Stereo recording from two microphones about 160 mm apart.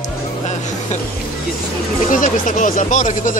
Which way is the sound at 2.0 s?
55° left (ahead or behind).